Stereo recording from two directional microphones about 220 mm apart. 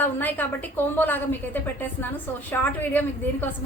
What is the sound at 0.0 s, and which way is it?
A woman's voice, 10° left (ahead or behind).